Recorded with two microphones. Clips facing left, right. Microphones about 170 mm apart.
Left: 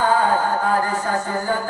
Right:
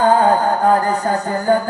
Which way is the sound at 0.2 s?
45° right (ahead or behind).